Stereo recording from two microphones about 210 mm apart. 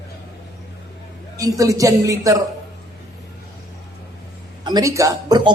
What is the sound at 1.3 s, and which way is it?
A man's voice, 15° right (ahead or behind).